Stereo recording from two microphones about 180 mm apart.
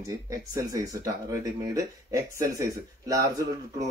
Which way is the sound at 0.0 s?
20° right (ahead or behind).